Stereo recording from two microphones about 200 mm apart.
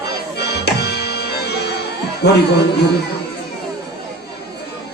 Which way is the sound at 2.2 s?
55° left (ahead or behind).